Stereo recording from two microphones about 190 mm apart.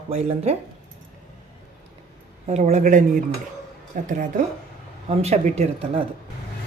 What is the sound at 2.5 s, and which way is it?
A woman's voice, 35° right (ahead or behind).